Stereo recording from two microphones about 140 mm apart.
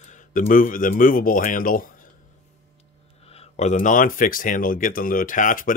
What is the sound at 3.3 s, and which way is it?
Speech, 55° left (ahead or behind).